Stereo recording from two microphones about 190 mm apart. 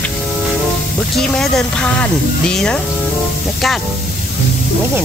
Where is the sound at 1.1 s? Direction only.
Centre (ahead or behind).